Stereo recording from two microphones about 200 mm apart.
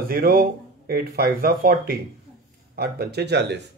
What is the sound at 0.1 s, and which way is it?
Speech, 50° right (ahead or behind).